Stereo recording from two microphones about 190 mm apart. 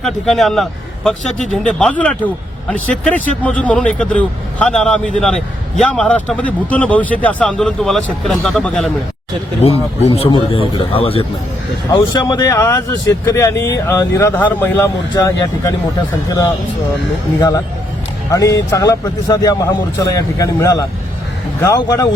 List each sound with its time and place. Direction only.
0.0 s a man's voice: centre (ahead or behind)
9.6 s a man's voice: 30° left (ahead or behind); by 15.7 s 15° left (ahead or behind)
18.3 s speech: 15° left (ahead or behind)